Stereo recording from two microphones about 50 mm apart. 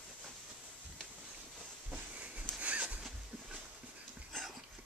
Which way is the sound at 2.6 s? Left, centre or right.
Right.